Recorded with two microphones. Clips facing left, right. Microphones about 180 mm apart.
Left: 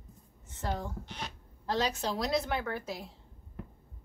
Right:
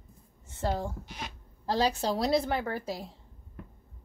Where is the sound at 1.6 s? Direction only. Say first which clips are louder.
Right 4 dB; 35° right (ahead or behind).